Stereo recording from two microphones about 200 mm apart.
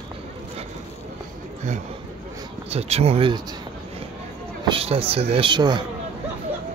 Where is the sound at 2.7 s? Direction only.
30° right (ahead or behind).